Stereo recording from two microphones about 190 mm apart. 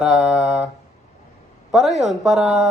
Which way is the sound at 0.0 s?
5° right (ahead or behind).